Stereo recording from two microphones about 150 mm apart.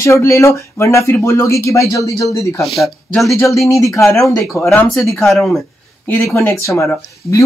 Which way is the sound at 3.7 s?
20° left (ahead or behind).